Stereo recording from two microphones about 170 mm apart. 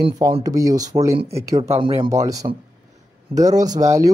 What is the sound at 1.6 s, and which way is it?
Speech, 35° right (ahead or behind).